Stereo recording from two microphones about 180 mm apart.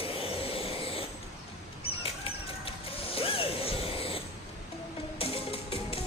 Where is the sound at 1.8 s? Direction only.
30° left (ahead or behind).